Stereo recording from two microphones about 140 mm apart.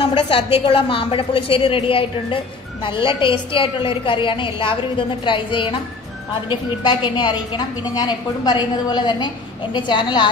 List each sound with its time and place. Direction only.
0.0 s a woman's voice: 40° left (ahead or behind)